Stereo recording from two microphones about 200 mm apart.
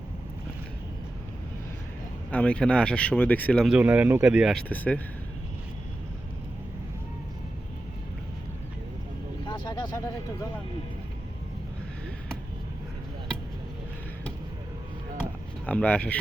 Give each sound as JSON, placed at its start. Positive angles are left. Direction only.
{"t": 2.3, "sound": "speech", "side_deg": 5}
{"t": 9.5, "sound": "vehicle", "side_deg": 20}
{"t": 15.6, "sound": "speech", "side_deg": 5}